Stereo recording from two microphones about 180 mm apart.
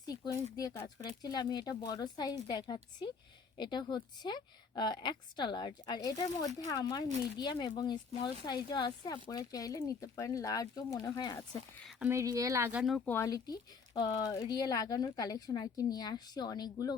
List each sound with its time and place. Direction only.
0.0 s speech: 20° left (ahead or behind)
11.9 s speech: 5° right (ahead or behind)
12.1 s speech: 20° right (ahead or behind)
13.1 s speech: 15° left (ahead or behind)